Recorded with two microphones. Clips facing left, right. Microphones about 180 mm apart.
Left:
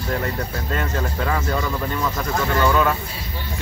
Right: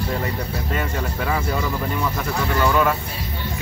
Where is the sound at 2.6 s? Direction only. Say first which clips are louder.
Even; 5° right (ahead or behind).